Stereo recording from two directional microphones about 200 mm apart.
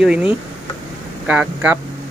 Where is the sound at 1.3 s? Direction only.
5° right (ahead or behind).